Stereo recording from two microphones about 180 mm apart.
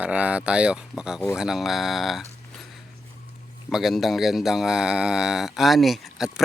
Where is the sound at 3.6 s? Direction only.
Centre (ahead or behind).